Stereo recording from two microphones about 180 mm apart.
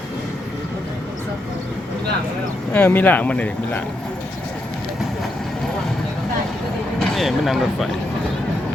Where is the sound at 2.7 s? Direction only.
10° left (ahead or behind).